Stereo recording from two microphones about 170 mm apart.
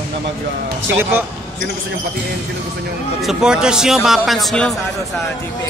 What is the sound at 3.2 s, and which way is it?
A man's voice, 5° right (ahead or behind).